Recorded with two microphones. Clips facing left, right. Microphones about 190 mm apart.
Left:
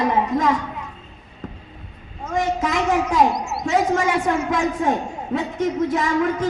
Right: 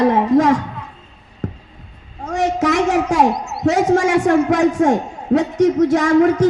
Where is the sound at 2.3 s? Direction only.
80° right.